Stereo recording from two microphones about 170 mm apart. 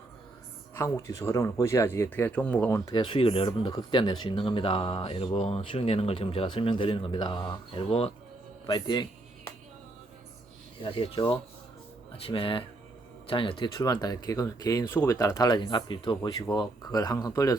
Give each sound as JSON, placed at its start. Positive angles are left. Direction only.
{"t": 0.7, "sound": "speech", "side_deg": 15}
{"t": 8.6, "sound": "music", "side_deg": 25}
{"t": 10.8, "sound": "speech", "side_deg": 30}